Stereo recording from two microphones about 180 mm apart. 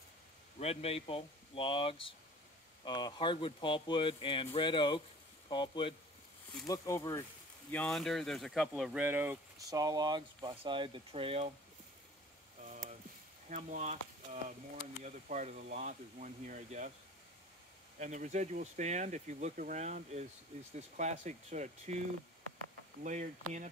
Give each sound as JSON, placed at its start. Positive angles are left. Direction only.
{"t": 0.6, "sound": "speech", "side_deg": 35}
{"t": 7.7, "sound": "speech", "side_deg": 5}
{"t": 13.5, "sound": "speech", "side_deg": -45}
{"t": 17.9, "sound": "speech", "side_deg": -40}
{"t": 23.0, "sound": "speech", "side_deg": -45}